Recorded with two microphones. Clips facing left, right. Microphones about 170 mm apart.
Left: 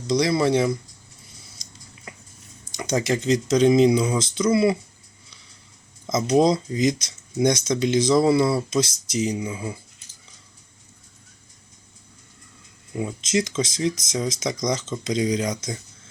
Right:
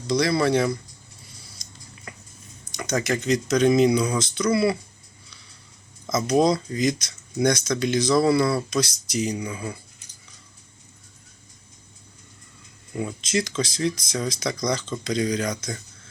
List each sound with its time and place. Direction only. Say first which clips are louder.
0.1 s speech: left 1 dB; 20° left (ahead or behind)
2.1 s a sound: even; 20° left (ahead or behind)
2.7 s speech: left 2 dB; 25° left (ahead or behind)
6.1 s speech: left 1 dB; 25° left (ahead or behind)
13.0 s speech: left 2 dB; 20° left (ahead or behind)